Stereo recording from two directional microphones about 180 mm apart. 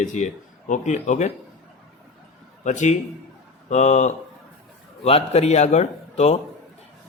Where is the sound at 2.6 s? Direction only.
40° left (ahead or behind).